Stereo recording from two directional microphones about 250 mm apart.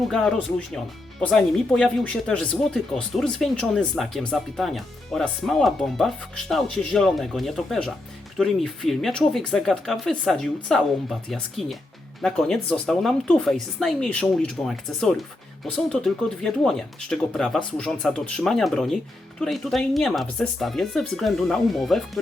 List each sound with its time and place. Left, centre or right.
0.1 s speech: centre